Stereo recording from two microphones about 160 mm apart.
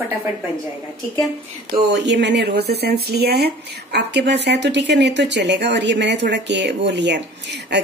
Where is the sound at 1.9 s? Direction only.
90° right.